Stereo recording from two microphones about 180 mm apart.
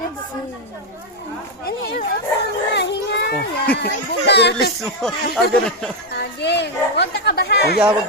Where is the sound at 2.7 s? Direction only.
70° left (ahead or behind).